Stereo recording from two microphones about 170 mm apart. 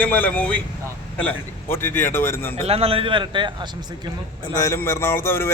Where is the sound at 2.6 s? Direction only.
35° right (ahead or behind).